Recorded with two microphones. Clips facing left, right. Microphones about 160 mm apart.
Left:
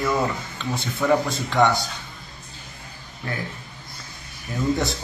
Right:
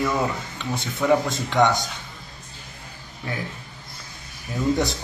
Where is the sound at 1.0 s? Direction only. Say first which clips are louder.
Right 1 dB; 10° right (ahead or behind).